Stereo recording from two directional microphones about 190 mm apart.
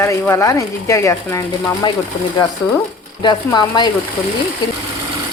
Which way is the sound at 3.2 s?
25° left (ahead or behind).